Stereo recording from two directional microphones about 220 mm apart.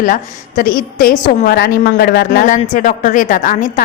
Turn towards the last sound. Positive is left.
turn(degrees=35)  # may be behind; listen again after turning